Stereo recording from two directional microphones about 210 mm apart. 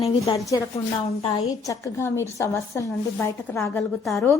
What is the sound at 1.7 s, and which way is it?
A woman's voice, 15° left (ahead or behind).